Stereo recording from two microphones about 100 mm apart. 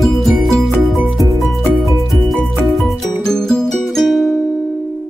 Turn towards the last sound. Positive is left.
turn(degrees=0)  # may be behind; listen again after turning